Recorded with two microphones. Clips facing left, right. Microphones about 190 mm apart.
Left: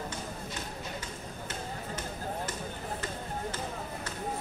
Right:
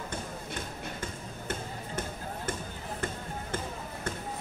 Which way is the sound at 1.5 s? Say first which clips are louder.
Right 3 dB; 50° right (ahead or behind).